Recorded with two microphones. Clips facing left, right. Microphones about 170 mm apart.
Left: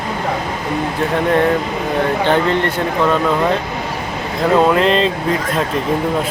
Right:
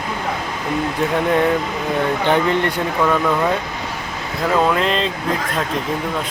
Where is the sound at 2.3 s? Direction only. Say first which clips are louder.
Even; 15° right (ahead or behind).